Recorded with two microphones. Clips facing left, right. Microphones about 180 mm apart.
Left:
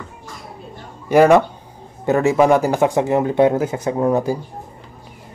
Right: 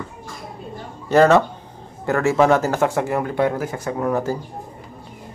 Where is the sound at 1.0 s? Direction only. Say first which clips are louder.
Left 2 dB; 10° left (ahead or behind).